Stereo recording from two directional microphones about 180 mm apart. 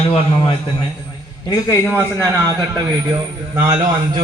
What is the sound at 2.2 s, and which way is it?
A man's voice, 20° right (ahead or behind).